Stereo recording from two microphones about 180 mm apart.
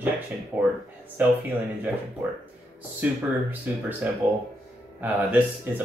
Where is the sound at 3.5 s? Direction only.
10° right (ahead or behind).